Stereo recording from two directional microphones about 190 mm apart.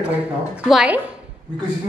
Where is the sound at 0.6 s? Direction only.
5° right (ahead or behind).